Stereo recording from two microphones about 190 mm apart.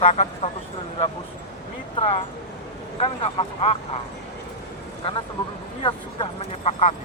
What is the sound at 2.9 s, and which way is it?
Speech, 30° left (ahead or behind).